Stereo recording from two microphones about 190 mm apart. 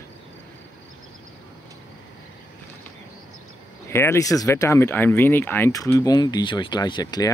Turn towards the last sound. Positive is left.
turn(degrees=20)  # may be behind; listen again after turning